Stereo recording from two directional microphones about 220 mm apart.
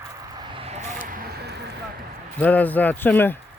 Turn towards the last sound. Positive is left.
turn(degrees=10)  # may be behind; listen again after turning